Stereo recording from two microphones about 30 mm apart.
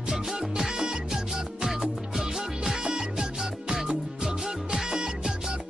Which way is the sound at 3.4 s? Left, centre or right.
Centre.